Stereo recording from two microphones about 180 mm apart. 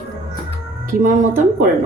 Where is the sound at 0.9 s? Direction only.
50° right (ahead or behind).